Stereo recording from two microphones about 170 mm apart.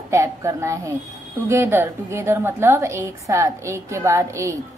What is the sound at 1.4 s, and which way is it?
A woman's voice, 15° right (ahead or behind).